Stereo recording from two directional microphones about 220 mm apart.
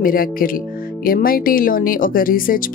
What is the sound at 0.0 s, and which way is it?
Speech, 40° left (ahead or behind).